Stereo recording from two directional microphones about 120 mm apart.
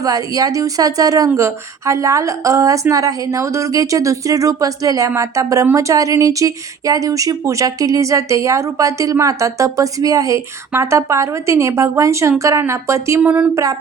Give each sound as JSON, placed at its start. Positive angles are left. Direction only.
{"t": 0.0, "sound": "speech", "side_deg": -30}